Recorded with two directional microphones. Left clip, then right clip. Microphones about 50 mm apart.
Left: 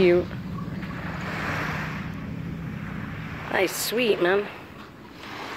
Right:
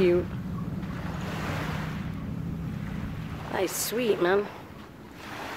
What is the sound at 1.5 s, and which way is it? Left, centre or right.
Vehicle, left.